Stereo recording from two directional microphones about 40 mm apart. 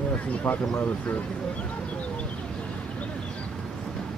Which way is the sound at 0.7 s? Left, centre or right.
Left.